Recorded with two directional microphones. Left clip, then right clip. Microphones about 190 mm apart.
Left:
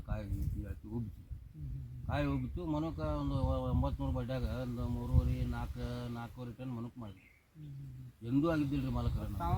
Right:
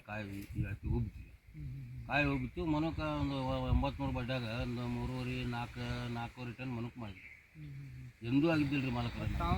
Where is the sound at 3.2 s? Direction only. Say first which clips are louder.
Right 1 dB; 20° left (ahead or behind); by 6.2 s centre (ahead or behind).